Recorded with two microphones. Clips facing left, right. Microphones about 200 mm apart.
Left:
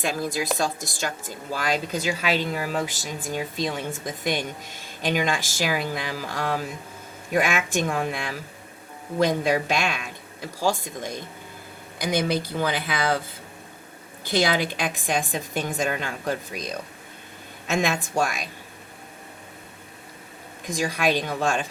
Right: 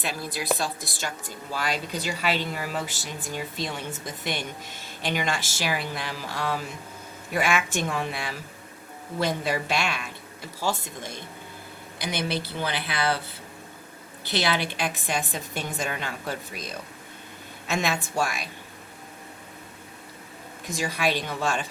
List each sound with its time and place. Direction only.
0.0 s a woman's voice: 45° left (ahead or behind)
11.9 s a woman's voice: 45° left (ahead or behind)
14.3 s a woman's voice: 45° left (ahead or behind)
17.7 s a woman's voice: 45° left (ahead or behind)
20.8 s a woman's voice: 45° left (ahead or behind)